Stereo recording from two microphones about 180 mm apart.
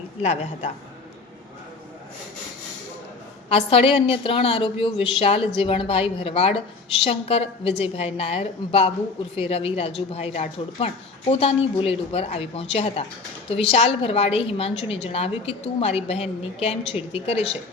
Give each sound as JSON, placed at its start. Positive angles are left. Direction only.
{"t": 0.2, "sound": "a woman's voice", "side_deg": 40}
{"t": 3.5, "sound": "a woman's voice", "side_deg": 30}